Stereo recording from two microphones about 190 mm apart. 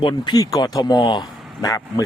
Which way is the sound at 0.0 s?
20° left (ahead or behind).